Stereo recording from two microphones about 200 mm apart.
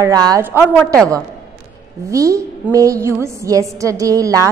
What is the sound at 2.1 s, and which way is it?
A woman's voice, 15° right (ahead or behind).